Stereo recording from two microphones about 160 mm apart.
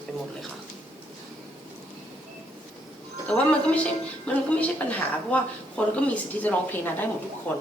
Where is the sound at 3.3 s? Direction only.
5° left (ahead or behind).